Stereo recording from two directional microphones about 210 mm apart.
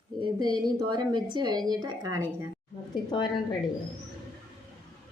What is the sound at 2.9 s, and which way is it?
Speech, 20° left (ahead or behind).